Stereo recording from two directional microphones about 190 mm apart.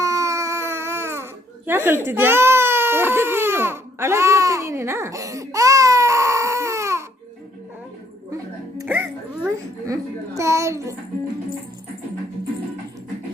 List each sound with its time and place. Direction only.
0.0 s baby cry: 15° right (ahead or behind)
8.8 s a child's voice: 10° right (ahead or behind)